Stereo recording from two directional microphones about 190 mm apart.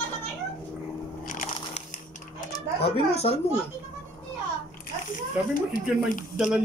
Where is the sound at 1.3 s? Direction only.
40° left (ahead or behind).